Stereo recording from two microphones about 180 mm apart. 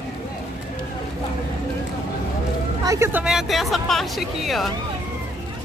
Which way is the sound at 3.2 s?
Centre (ahead or behind).